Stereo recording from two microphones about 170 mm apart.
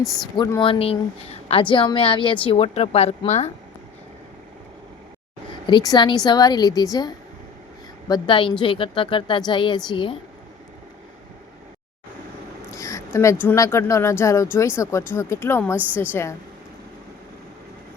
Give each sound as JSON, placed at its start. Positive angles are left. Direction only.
{"t": 0.0, "sound": "speech", "side_deg": 0}
{"t": 0.3, "sound": "a woman's voice", "side_deg": 25}
{"t": 0.7, "sound": "a woman's voice", "side_deg": 35}
{"t": 5.6, "sound": "a woman's voice", "side_deg": 25}
{"t": 12.7, "sound": "speech", "side_deg": 20}